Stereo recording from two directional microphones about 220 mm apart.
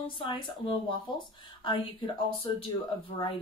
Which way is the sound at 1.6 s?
20° left (ahead or behind).